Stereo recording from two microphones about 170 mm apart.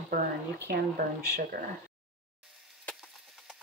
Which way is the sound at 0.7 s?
65° right (ahead or behind).